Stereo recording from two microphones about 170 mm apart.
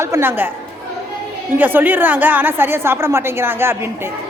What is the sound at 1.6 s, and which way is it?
A woman's voice, 10° right (ahead or behind).